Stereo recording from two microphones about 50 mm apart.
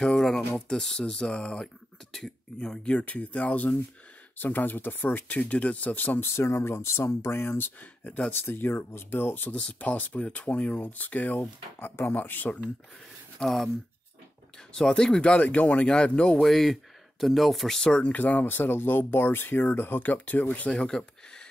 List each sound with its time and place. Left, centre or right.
0.0 s speech: centre; by 3.7 s left
4.4 s speech: left
5.4 s speech: left
6.2 s speech: left
7.8 s speech: left
8.3 s speech: left
9.8 s speech: left
13.4 s speech: centre
14.7 s speech: centre
16.3 s speech: centre
17.8 s speech: left
18.1 s speech: left
20.0 s speech: left
20.7 s a sound: centre